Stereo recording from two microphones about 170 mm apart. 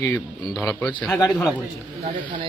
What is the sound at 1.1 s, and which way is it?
Speech, 20° left (ahead or behind).